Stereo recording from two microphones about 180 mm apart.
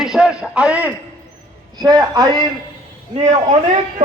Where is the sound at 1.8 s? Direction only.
20° right (ahead or behind).